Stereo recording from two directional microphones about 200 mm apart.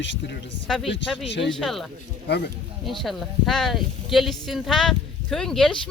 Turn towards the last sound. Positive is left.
turn(degrees=5)  # may be behind; listen again after turning